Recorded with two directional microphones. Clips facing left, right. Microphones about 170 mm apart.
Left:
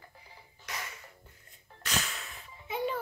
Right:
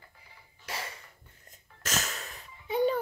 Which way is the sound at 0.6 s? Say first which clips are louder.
Right 3 dB; 30° right (ahead or behind).